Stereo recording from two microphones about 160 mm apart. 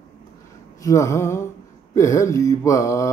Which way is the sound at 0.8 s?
20° left (ahead or behind).